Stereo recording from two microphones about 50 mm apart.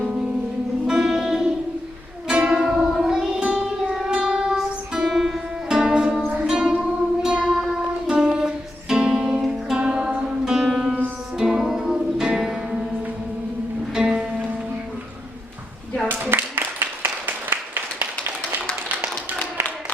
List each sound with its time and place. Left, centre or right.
0.9 s music: centre
2.2 s music: right
2.5 s music: centre
5.6 s music: centre
7.5 s music: centre
10.4 s music: centre
10.7 s music: centre
11.3 s music: centre
13.9 s music: centre
16.0 s a sound: right